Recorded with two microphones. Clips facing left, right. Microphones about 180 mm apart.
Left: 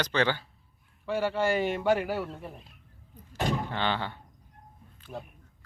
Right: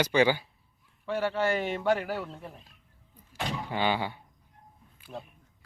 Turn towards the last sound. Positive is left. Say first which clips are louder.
# left 1 dB
turn(degrees=10)  # may be behind; listen again after turning